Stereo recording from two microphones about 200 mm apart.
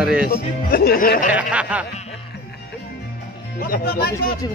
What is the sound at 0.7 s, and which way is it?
Music, 50° left (ahead or behind).